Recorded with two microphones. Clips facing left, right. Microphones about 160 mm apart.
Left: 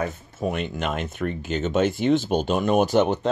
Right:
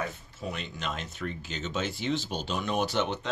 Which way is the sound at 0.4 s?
55° left (ahead or behind).